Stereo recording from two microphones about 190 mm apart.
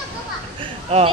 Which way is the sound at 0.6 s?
30° right (ahead or behind).